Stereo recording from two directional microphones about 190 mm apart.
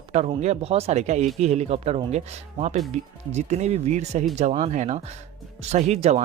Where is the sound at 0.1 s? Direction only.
35° right (ahead or behind).